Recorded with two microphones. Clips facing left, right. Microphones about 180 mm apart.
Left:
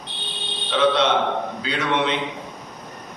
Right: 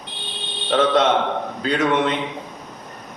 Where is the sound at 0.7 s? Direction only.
45° right (ahead or behind).